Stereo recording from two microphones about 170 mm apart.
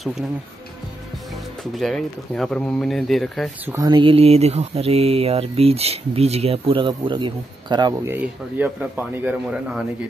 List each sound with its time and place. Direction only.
1.6 s speech: centre (ahead or behind)
3.6 s speech: 20° right (ahead or behind)
8.1 s speech: 10° right (ahead or behind)